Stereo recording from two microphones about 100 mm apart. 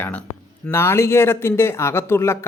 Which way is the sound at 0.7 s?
25° left (ahead or behind).